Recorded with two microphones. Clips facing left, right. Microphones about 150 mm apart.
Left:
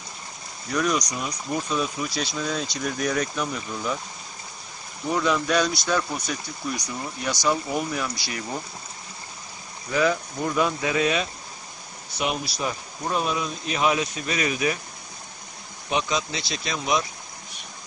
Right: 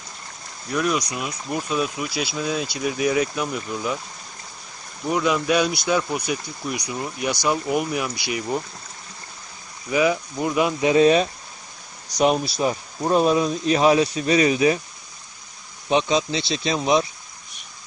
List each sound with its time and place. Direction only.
0.7 s speech: 5° right (ahead or behind)
5.1 s speech: 10° right (ahead or behind)
9.8 s speech: 15° right (ahead or behind)
10.9 s speech: 30° right (ahead or behind)
12.5 s speech: 25° right (ahead or behind)
13.1 s speech: 35° right (ahead or behind)
15.9 s speech: 30° right (ahead or behind)